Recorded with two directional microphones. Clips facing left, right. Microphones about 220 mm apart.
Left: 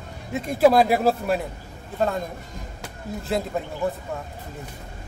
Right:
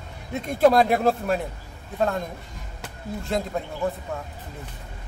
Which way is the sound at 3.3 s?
5° left (ahead or behind).